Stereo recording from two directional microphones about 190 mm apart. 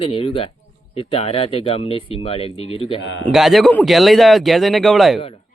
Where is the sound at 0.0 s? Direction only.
30° left (ahead or behind).